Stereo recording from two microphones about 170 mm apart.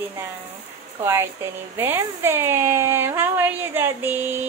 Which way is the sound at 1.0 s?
15° right (ahead or behind).